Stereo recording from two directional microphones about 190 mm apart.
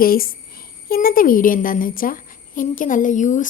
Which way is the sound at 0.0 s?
50° left (ahead or behind).